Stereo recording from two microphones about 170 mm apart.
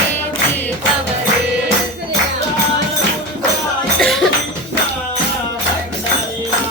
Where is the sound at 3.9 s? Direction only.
Centre (ahead or behind).